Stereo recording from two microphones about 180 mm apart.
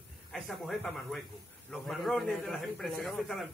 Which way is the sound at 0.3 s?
Centre (ahead or behind).